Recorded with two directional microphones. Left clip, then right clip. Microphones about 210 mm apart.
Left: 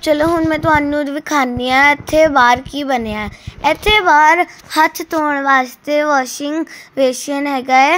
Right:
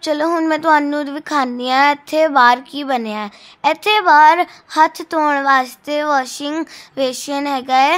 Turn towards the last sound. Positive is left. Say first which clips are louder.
# left 2 dB
turn(degrees=0)  # may be behind; listen again after turning